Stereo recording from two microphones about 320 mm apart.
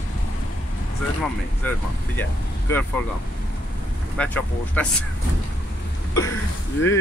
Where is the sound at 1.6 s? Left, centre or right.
Centre.